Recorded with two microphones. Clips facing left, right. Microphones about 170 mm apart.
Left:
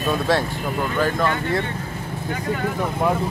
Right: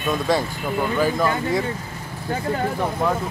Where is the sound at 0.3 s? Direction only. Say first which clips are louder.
Even; centre (ahead or behind).